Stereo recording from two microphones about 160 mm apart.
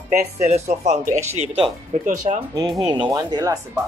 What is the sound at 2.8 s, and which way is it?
Speech, 25° right (ahead or behind).